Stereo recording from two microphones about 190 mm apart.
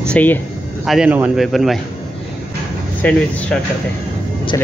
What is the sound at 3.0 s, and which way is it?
Speech, 5° left (ahead or behind).